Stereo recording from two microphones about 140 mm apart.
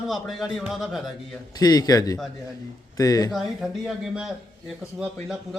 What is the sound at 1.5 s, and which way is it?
Speech, 25° left (ahead or behind).